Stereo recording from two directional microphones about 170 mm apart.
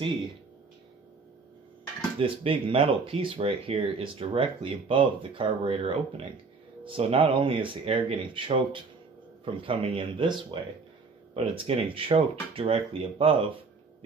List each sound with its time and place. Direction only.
2.1 s speech: 30° right (ahead or behind)